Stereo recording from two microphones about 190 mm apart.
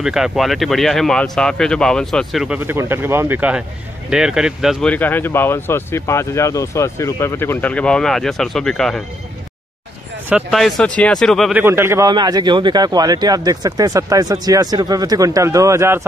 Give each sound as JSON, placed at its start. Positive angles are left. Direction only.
{"t": 0.0, "sound": "speech", "side_deg": 0}
{"t": 4.9, "sound": "speech", "side_deg": 10}
{"t": 10.3, "sound": "speech", "side_deg": 0}
{"t": 11.6, "sound": "speech", "side_deg": -15}